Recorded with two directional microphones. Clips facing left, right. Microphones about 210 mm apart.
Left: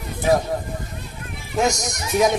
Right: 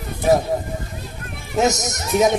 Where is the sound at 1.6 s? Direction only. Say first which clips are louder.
Right 2 dB; 20° right (ahead or behind).